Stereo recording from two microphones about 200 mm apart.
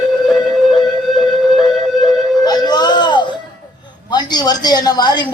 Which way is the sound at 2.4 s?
20° left (ahead or behind).